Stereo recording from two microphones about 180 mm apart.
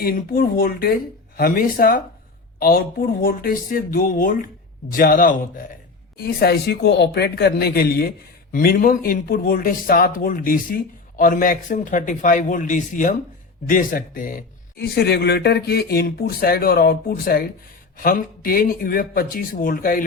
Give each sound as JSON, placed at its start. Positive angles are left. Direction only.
{"t": 0.0, "sound": "speech", "side_deg": 55}
{"t": 6.1, "sound": "speech", "side_deg": 65}